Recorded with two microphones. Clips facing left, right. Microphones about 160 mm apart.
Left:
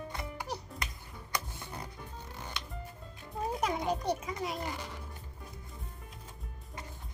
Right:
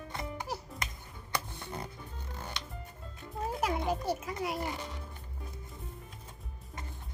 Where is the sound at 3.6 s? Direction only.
5° right (ahead or behind).